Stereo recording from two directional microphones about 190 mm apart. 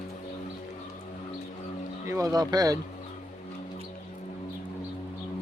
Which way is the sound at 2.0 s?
20° right (ahead or behind).